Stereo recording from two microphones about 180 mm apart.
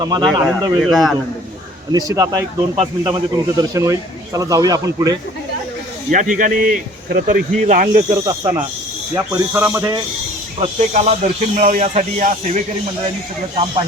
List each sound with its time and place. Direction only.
0.0 s speech: 20° right (ahead or behind)
0.8 s a man's voice: centre (ahead or behind)
1.9 s speech: 20° right (ahead or behind)
6.1 s speech: 50° right (ahead or behind)
8.2 s speech: 20° right (ahead or behind)
10.6 s speech: 40° right (ahead or behind)